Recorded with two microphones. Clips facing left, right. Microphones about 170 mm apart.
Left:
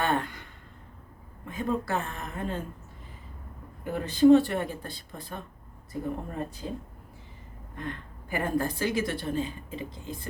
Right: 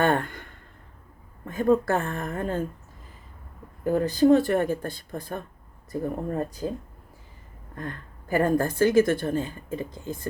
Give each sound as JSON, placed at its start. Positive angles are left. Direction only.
{"t": 0.0, "sound": "a sound", "side_deg": -50}
{"t": 1.5, "sound": "a woman's voice", "side_deg": -50}
{"t": 3.9, "sound": "a woman's voice", "side_deg": -40}
{"t": 7.8, "sound": "a woman's voice", "side_deg": -45}